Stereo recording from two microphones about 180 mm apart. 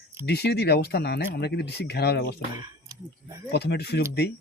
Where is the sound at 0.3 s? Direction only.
65° left (ahead or behind).